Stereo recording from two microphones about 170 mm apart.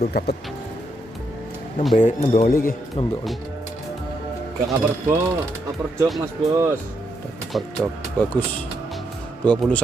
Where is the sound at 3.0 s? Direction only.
35° left (ahead or behind).